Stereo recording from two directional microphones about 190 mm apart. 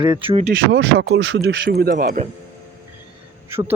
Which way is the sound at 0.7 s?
75° right (ahead or behind).